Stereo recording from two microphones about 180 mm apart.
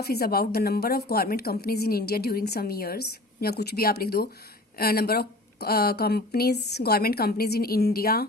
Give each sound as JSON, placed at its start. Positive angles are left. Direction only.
{"t": 0.0, "sound": "a woman's voice", "side_deg": 60}